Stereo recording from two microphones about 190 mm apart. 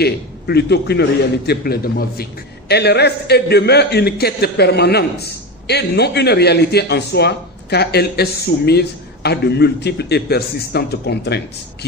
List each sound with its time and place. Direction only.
0.0 s a man's voice: 60° left (ahead or behind)